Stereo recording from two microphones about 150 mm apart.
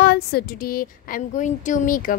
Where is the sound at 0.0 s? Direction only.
90° left.